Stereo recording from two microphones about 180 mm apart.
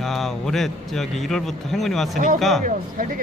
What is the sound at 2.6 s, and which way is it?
Speech, 50° right (ahead or behind).